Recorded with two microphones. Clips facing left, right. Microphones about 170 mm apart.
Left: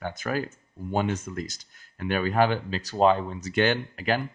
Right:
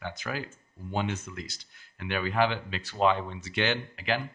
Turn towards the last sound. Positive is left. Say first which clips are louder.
# left 4 dB
turn(degrees=45)  # may be behind; listen again after turning